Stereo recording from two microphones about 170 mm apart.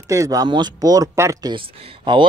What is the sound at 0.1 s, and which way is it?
Speech, 20° right (ahead or behind).